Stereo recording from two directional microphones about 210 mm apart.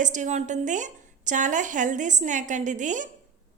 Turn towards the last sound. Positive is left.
turn(degrees=-35)  # may be behind; listen again after turning